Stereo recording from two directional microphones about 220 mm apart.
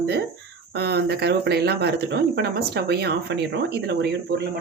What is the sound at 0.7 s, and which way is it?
Speech, 50° right (ahead or behind).